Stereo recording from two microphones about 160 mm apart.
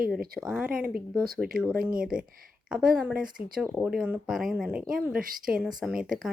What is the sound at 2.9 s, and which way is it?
Speech, 5° right (ahead or behind).